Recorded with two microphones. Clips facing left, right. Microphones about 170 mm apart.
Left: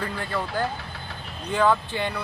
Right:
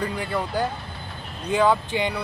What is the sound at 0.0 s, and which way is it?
Speech, 15° right (ahead or behind).